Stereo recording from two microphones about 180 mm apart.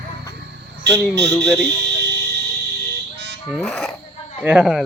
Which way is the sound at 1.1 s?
70° right (ahead or behind).